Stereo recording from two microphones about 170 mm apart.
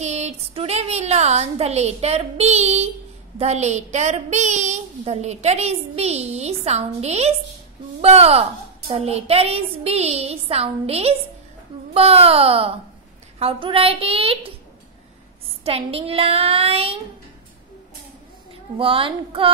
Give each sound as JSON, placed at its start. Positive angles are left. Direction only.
{"t": 0.0, "sound": "speech", "side_deg": -40}
{"t": 15.6, "sound": "speech", "side_deg": -35}
{"t": 18.8, "sound": "speech", "side_deg": -30}